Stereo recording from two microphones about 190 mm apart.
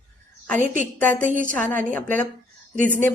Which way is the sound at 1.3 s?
45° right (ahead or behind).